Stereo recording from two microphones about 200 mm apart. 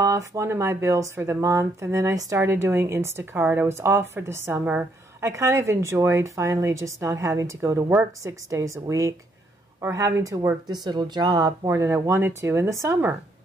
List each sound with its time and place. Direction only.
0.0 s speech: 15° right (ahead or behind)